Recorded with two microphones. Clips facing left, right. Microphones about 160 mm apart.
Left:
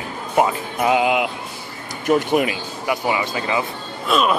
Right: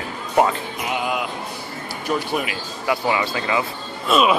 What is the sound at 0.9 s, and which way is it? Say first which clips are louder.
Speech: left 6 dB; 90° left.